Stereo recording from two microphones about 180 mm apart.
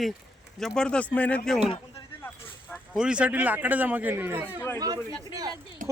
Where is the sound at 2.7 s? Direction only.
5° right (ahead or behind); by 5.5 s 20° right (ahead or behind).